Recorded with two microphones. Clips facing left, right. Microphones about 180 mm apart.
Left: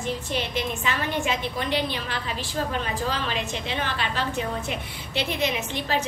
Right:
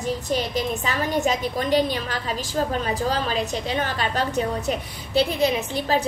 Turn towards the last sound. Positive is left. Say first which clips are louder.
# right 4 dB
turn(degrees=-35)  # may be behind; listen again after turning